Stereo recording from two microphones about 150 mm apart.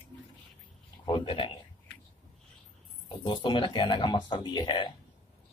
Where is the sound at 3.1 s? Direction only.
30° left (ahead or behind).